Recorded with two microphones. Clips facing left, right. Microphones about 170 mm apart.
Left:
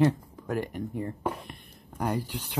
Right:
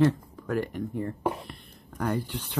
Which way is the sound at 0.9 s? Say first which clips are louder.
Right 3 dB; 15° left (ahead or behind).